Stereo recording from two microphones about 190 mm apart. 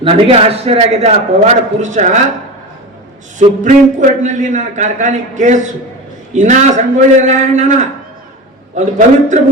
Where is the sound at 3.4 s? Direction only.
40° right (ahead or behind).